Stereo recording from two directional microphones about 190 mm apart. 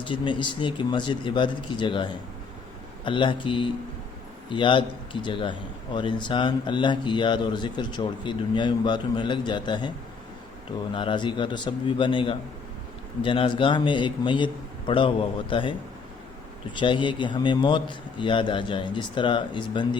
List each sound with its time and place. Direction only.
0.0 s a man's voice: 25° left (ahead or behind)
16.7 s a man's voice: 25° left (ahead or behind)